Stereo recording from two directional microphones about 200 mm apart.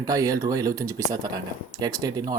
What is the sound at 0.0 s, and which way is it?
Speech, 15° right (ahead or behind).